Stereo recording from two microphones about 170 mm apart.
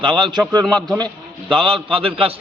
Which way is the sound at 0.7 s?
5° left (ahead or behind).